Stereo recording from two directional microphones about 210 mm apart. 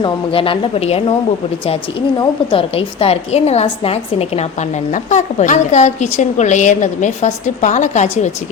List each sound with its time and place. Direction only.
0.0 s a woman's voice: 25° left (ahead or behind)